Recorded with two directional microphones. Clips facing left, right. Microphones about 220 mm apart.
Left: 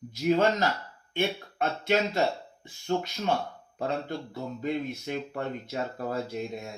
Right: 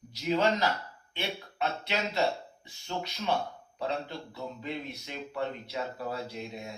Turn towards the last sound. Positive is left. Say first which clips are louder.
# left 4 dB
turn(degrees=50)  # may be behind; listen again after turning